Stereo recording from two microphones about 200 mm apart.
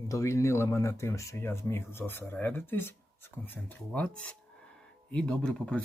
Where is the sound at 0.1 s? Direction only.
15° left (ahead or behind).